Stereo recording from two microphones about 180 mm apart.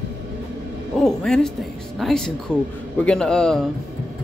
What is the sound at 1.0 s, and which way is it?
Speech, 5° left (ahead or behind).